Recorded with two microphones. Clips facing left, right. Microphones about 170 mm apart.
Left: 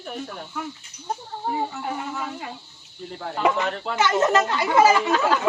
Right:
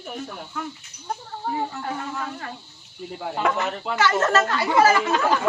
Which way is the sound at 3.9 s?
15° left (ahead or behind).